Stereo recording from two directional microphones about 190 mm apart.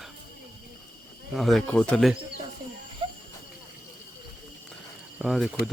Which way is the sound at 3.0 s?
25° right (ahead or behind).